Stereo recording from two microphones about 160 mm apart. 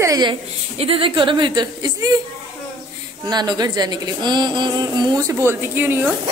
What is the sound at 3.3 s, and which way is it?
A woman's voice, 25° right (ahead or behind).